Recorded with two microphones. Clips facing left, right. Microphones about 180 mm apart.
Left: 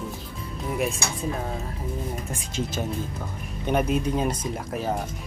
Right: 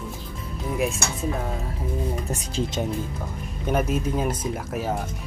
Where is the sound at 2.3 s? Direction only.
35° right (ahead or behind).